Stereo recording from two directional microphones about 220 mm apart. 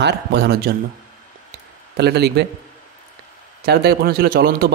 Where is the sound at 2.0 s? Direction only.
50° right (ahead or behind).